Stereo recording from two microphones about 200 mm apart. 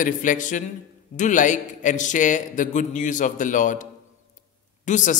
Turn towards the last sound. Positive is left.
turn(degrees=40)  # may be behind; listen again after turning